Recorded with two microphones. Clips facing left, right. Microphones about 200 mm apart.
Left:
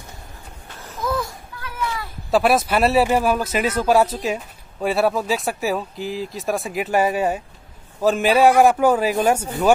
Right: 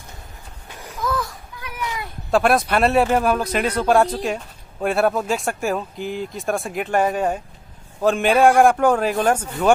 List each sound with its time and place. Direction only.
0.7 s a sound: 15° right (ahead or behind)
1.6 s cat: 15° right (ahead or behind)
2.3 s speech: 5° left (ahead or behind)